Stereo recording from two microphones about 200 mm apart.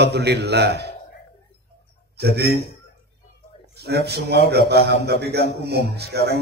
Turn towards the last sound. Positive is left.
turn(degrees=-55)  # may be behind; listen again after turning